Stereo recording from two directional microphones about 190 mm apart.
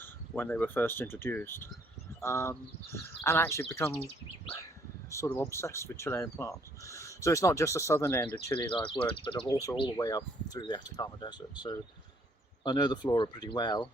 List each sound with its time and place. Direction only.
0.0 s speech: 10° left (ahead or behind)
5.1 s speech: 15° left (ahead or behind)
9.1 s speech: 25° left (ahead or behind)